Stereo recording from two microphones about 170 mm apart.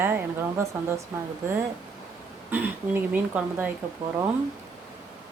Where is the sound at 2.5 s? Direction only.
10° right (ahead or behind).